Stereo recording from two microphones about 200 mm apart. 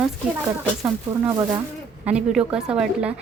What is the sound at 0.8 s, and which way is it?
Speech, 15° right (ahead or behind).